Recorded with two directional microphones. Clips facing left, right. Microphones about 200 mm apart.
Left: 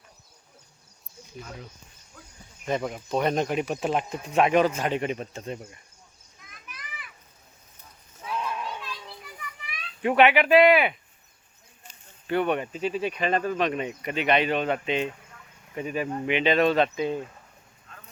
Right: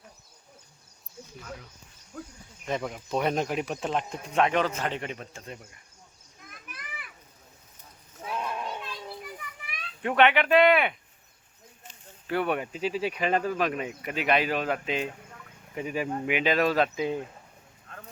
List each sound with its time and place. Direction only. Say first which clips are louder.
2.6 s speech: left 3 dB; centre (ahead or behind); by 5.5 s 20° left (ahead or behind)
6.5 s children playing: right 1 dB; 50° right (ahead or behind)
8.2 s a sound: left 1 dB; 35° right (ahead or behind)
10.0 s speech: left 3 dB; 10° left (ahead or behind)
12.3 s speech: left 3 dB; 5° right (ahead or behind)